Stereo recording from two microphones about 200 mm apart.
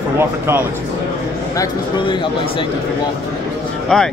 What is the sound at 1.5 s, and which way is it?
Speech, 20° left (ahead or behind).